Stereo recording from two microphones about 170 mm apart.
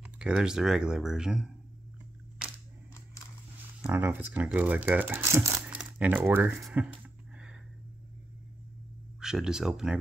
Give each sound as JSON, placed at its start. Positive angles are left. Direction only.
{"t": 0.0, "sound": "speech", "side_deg": -5}
{"t": 3.8, "sound": "speech", "side_deg": -10}
{"t": 9.2, "sound": "speech", "side_deg": -5}